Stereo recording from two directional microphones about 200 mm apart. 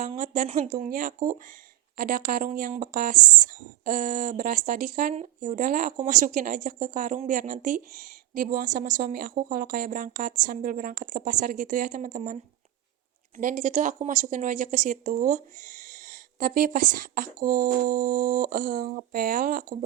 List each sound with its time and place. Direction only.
0.0 s speech: 40° right (ahead or behind)